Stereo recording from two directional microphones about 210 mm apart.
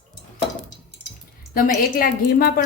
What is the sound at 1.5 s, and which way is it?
Speech, 45° left (ahead or behind).